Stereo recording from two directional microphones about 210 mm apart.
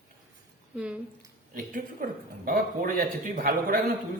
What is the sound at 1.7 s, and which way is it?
A man's voice, 40° right (ahead or behind).